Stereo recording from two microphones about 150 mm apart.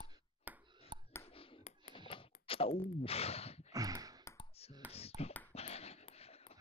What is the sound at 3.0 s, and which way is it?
Speech, 40° left (ahead or behind).